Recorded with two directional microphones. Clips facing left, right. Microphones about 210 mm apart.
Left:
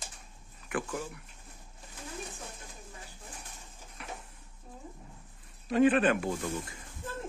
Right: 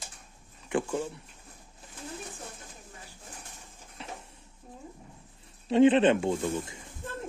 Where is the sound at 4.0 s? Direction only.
25° right (ahead or behind).